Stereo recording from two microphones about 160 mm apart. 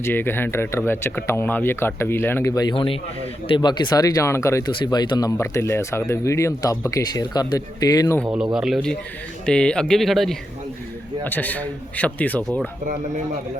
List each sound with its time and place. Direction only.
0.0 s speech: 15° left (ahead or behind)
8.5 s speech: centre (ahead or behind)